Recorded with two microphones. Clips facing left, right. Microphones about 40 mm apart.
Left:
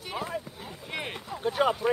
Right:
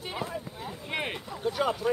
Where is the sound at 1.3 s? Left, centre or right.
Centre.